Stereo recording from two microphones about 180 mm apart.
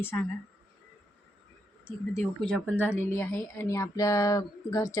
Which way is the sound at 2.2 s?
5° left (ahead or behind).